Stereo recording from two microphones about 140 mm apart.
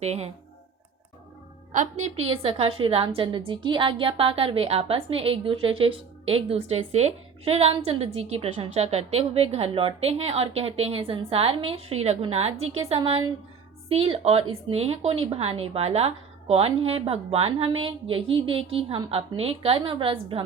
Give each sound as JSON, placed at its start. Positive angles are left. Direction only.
{"t": 0.0, "sound": "a woman's voice", "side_deg": -50}
{"t": 1.7, "sound": "a woman's voice", "side_deg": -60}
{"t": 13.9, "sound": "a woman's voice", "side_deg": -45}